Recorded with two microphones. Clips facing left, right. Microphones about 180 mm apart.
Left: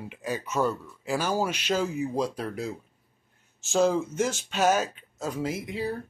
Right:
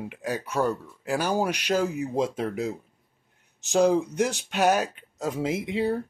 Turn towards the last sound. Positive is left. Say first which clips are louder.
# right 5 dB
turn(degrees=-25)  # may be behind; listen again after turning